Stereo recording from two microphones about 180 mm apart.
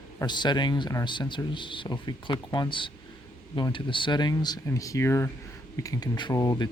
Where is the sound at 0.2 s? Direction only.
25° left (ahead or behind).